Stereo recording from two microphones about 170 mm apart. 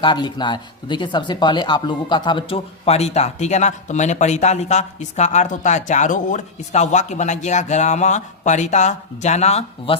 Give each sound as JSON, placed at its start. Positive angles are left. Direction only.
{"t": 0.0, "sound": "speech", "side_deg": 25}